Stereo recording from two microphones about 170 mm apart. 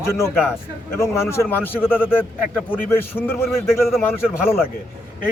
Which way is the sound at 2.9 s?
10° left (ahead or behind).